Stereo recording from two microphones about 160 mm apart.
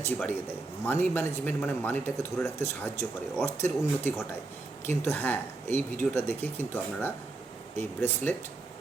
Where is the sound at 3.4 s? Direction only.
15° left (ahead or behind).